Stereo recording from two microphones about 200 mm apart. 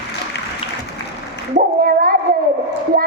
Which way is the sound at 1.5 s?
50° right (ahead or behind).